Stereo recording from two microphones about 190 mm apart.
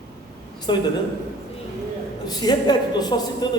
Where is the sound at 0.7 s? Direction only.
25° left (ahead or behind).